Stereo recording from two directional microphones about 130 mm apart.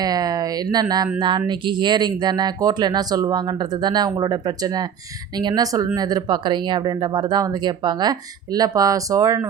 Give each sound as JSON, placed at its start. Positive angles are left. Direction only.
{"t": 0.0, "sound": "speech", "side_deg": -30}